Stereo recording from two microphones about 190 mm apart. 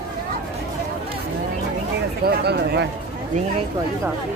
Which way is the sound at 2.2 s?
60° right (ahead or behind).